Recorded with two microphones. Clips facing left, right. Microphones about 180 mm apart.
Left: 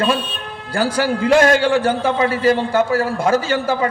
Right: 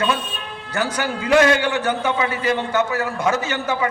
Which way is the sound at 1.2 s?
50° left (ahead or behind).